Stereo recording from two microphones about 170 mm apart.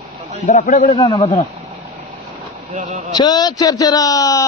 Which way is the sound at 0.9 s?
35° left (ahead or behind).